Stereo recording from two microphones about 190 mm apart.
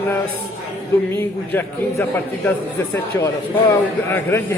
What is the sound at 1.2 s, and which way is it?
A man's voice, 10° left (ahead or behind).